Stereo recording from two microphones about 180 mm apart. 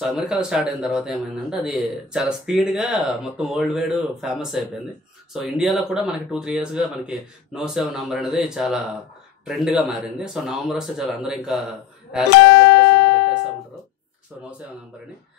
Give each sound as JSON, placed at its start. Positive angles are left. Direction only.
{"t": 0.0, "sound": "speech", "side_deg": 0}
{"t": 12.5, "sound": "music", "side_deg": 70}